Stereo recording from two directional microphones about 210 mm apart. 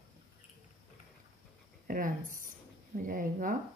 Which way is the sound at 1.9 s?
40° right (ahead or behind).